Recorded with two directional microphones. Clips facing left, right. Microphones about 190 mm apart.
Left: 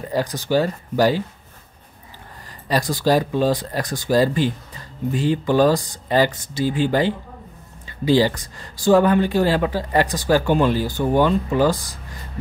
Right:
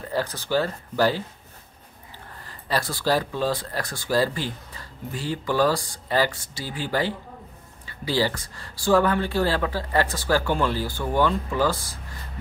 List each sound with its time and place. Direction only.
0.0 s speech: 15° left (ahead or behind)
2.7 s speech: 15° left (ahead or behind)